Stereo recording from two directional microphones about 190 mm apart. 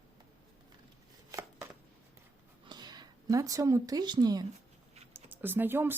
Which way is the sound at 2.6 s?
20° right (ahead or behind).